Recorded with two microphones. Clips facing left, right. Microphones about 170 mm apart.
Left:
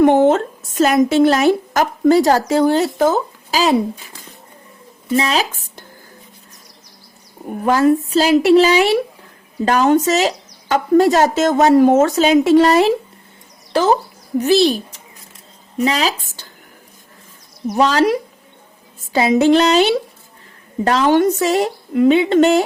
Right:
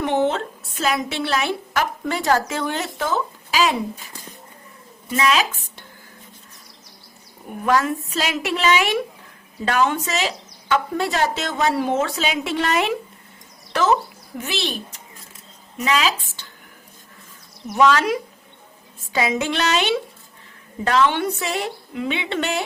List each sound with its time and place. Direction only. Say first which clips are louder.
0.0 s a woman's voice: left 9 dB; 50° left (ahead or behind)
5.1 s a woman's voice: left 3 dB; 35° left (ahead or behind)
7.6 s a woman's voice: left 7 dB; 35° left (ahead or behind)
15.8 s a woman's voice: left 4 dB; 35° left (ahead or behind)
17.7 s a woman's voice: left 3 dB; 35° left (ahead or behind)